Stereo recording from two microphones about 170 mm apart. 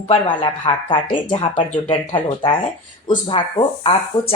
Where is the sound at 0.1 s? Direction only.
30° left (ahead or behind).